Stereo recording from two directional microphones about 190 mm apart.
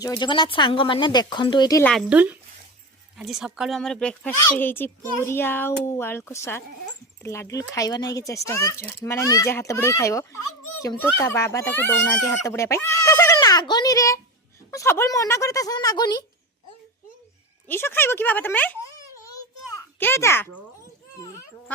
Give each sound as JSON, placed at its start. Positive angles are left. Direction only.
{"t": 0.0, "sound": "speech", "side_deg": 25}
{"t": 1.8, "sound": "speech", "side_deg": 0}
{"t": 17.7, "sound": "speech", "side_deg": 10}
{"t": 20.0, "sound": "speech", "side_deg": 10}